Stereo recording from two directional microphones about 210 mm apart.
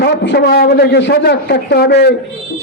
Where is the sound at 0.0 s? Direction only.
55° left (ahead or behind).